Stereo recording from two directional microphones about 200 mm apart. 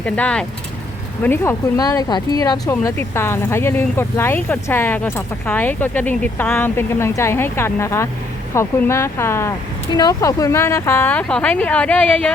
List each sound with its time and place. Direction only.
0.0 s speech: 5° left (ahead or behind)